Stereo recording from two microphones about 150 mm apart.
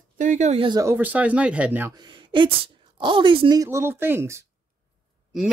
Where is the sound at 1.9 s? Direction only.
30° right (ahead or behind).